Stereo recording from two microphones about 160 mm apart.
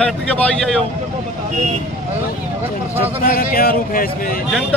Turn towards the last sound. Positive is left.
turn(degrees=65)  # may be behind; listen again after turning